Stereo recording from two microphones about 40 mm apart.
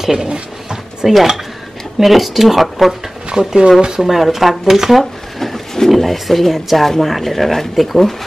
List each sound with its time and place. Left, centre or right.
0.0 s speech: centre
3.3 s speech: centre
4.0 s speech: centre
5.4 s speech: centre